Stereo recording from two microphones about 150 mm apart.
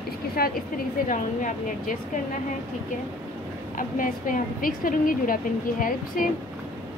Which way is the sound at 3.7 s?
65° left (ahead or behind).